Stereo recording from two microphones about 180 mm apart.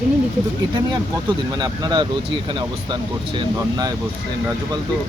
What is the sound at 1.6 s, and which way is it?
Speech, 25° right (ahead or behind).